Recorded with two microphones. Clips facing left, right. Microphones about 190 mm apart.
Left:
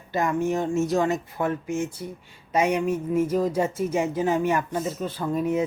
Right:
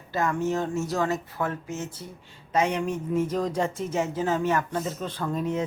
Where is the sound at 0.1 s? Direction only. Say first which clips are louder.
Left 2 dB; 15° left (ahead or behind).